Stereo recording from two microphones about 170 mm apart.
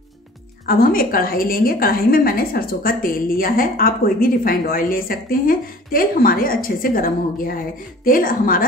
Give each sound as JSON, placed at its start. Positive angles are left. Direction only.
{"t": 0.7, "sound": "a woman's voice", "side_deg": 55}